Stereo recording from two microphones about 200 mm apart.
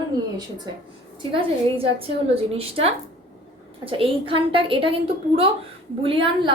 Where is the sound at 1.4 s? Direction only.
30° right (ahead or behind).